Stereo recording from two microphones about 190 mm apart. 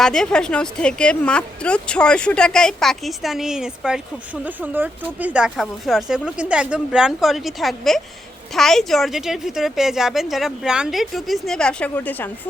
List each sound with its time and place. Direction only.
0.0 s a woman's voice: 5° left (ahead or behind)